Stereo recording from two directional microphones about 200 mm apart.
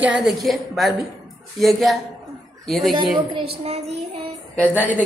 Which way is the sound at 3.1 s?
25° right (ahead or behind).